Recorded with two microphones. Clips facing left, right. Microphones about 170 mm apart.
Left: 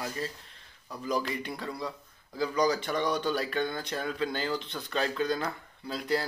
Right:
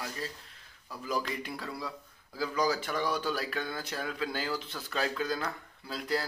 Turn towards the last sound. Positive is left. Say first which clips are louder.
# left 3 dB
turn(degrees=0)  # may be behind; listen again after turning